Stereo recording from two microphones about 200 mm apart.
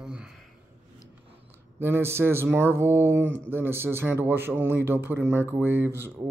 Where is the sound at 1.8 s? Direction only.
10° right (ahead or behind).